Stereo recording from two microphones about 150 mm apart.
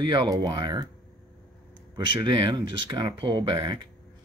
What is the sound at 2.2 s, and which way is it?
Speech, 30° right (ahead or behind).